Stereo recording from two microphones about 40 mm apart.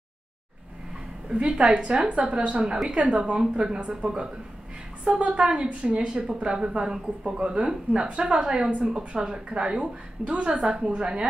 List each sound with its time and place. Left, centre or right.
1.3 s a woman's voice: right
5.1 s a woman's voice: right
7.4 s a woman's voice: right
8.6 s a woman's voice: right
8.9 s a woman's voice: right